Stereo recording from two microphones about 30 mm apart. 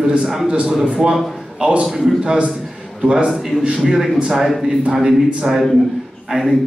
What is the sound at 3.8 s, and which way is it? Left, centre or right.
Speech, centre.